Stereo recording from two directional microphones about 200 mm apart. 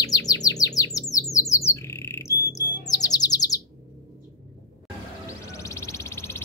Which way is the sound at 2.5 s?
15° left (ahead or behind).